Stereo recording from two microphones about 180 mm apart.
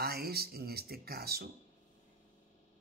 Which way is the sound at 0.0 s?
60° right (ahead or behind).